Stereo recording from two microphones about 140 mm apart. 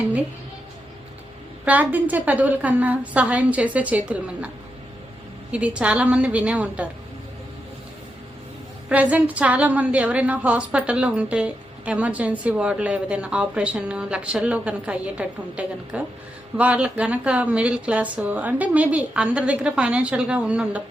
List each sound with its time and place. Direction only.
1.6 s a woman's voice: 10° right (ahead or behind)
8.9 s a woman's voice: 10° right (ahead or behind)